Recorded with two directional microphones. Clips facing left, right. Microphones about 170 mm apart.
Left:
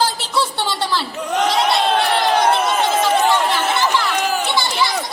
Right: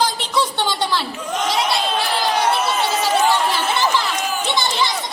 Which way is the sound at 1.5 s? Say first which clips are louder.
Left 2 dB; centre (ahead or behind).